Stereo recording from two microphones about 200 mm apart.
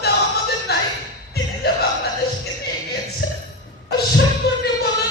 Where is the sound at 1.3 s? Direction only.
50° left (ahead or behind).